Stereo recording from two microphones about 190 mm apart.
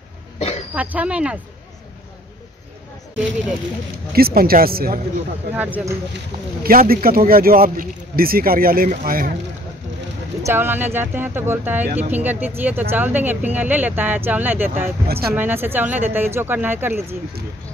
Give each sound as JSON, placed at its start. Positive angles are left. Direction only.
{"t": 0.4, "sound": "a sound", "side_deg": 35}
{"t": 0.7, "sound": "speech", "side_deg": -10}
{"t": 4.1, "sound": "speech", "side_deg": -50}
{"t": 5.5, "sound": "speech", "side_deg": -10}
{"t": 6.6, "sound": "speech", "side_deg": -50}
{"t": 10.4, "sound": "speech", "side_deg": -10}
{"t": 15.0, "sound": "speech", "side_deg": -55}
{"t": 15.3, "sound": "speech", "side_deg": -10}